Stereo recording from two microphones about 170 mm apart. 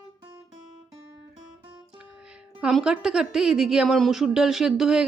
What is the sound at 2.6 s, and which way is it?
A woman's voice, 5° right (ahead or behind).